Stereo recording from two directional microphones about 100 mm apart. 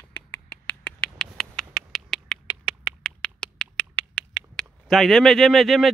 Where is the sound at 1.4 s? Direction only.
5° left (ahead or behind).